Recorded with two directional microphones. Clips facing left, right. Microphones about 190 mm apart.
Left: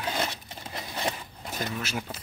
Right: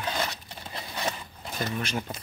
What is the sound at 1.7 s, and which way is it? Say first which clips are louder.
Speech: right 2 dB; 5° left (ahead or behind).